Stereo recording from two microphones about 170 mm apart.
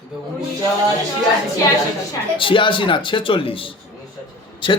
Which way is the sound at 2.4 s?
30° left (ahead or behind).